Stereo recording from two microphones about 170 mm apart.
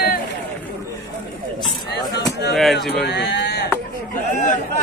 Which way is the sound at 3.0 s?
85° left.